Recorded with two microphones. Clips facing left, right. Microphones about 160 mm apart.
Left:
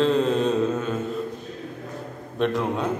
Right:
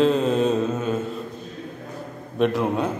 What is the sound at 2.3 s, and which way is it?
Speech, 5° right (ahead or behind).